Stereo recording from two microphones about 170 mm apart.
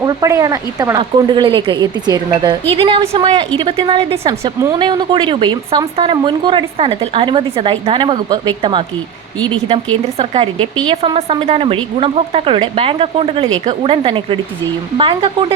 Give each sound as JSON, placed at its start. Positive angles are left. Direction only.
{"t": 0.0, "sound": "speech", "side_deg": -20}